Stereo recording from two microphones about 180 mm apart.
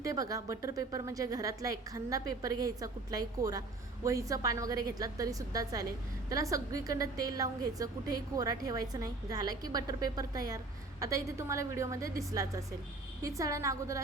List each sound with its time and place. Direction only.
0.0 s a woman's voice: 20° right (ahead or behind)